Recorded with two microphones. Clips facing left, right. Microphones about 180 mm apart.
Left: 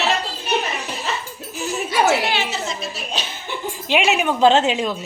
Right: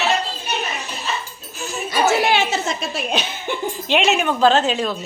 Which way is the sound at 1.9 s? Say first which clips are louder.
Right 2 dB; 50° right (ahead or behind).